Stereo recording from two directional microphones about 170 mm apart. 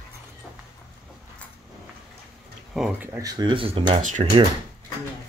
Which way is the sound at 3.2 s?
25° right (ahead or behind).